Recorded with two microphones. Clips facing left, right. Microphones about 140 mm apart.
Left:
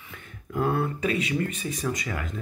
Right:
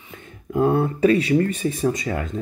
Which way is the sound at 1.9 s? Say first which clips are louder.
Right 5 dB; 25° right (ahead or behind).